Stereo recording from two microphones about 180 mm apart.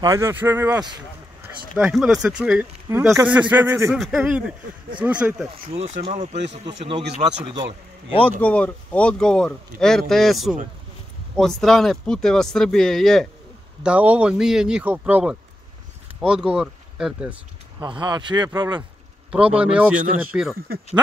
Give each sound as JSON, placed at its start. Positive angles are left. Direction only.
{"t": 0.0, "sound": "speech", "side_deg": -15}
{"t": 3.9, "sound": "speech", "side_deg": 0}
{"t": 5.5, "sound": "speech", "side_deg": -35}
{"t": 7.2, "sound": "speech", "side_deg": -30}
{"t": 8.4, "sound": "speech", "side_deg": 10}
{"t": 17.7, "sound": "speech", "side_deg": -25}
{"t": 19.3, "sound": "speech", "side_deg": -5}